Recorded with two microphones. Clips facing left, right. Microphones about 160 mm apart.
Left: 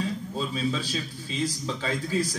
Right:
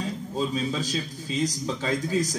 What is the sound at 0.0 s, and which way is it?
A man's voice, 45° right (ahead or behind).